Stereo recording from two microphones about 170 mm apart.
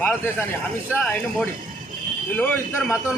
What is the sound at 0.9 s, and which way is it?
Speech, 5° left (ahead or behind).